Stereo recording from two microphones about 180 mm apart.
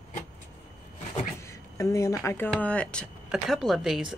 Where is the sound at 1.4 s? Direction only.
15° left (ahead or behind).